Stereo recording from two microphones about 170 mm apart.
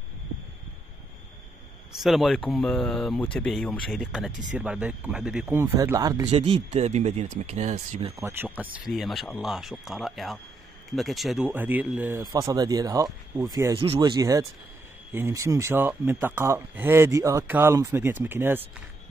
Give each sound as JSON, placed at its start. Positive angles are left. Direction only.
{"t": 1.9, "sound": "speech", "side_deg": 0}
{"t": 5.6, "sound": "speech", "side_deg": -20}
{"t": 6.3, "sound": "speech", "side_deg": -35}
{"t": 8.2, "sound": "speech", "side_deg": -15}
{"t": 13.7, "sound": "speech", "side_deg": -30}